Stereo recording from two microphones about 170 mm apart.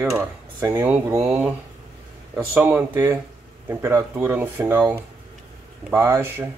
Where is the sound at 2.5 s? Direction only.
10° right (ahead or behind).